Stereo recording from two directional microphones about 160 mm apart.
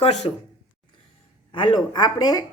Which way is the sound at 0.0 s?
45° left (ahead or behind).